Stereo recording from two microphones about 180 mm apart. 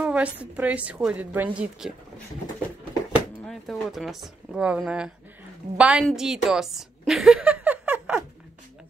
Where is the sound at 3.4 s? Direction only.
Centre (ahead or behind).